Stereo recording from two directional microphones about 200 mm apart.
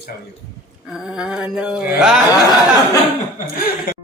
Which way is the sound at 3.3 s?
45° left (ahead or behind).